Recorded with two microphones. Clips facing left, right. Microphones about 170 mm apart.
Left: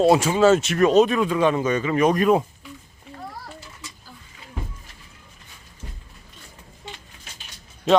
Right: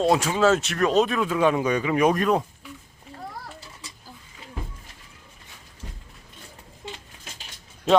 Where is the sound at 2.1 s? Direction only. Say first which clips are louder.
Left 4 dB; 5° left (ahead or behind).